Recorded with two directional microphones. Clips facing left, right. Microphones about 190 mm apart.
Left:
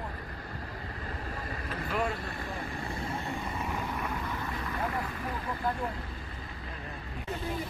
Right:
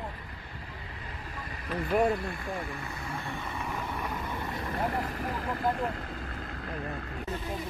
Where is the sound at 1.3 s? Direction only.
40° left (ahead or behind).